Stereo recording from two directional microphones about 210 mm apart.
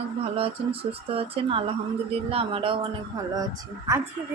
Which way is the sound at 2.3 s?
25° right (ahead or behind).